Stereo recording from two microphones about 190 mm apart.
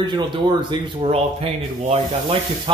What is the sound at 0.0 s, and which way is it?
Speech, 25° right (ahead or behind).